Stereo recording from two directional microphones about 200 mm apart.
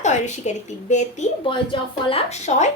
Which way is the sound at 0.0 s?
35° left (ahead or behind).